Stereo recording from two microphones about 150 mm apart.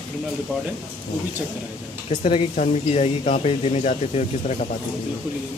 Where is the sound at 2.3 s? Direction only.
40° left (ahead or behind).